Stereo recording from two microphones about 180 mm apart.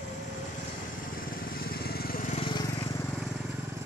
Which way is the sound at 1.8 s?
55° left (ahead or behind).